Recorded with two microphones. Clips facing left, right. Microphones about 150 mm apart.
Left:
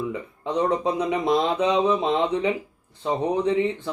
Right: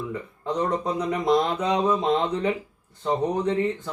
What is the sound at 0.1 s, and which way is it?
Speech, 10° left (ahead or behind).